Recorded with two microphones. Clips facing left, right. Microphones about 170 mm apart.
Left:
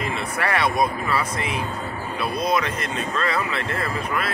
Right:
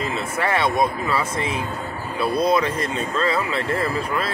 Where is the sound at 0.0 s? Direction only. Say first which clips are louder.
Right 2 dB; 25° right (ahead or behind).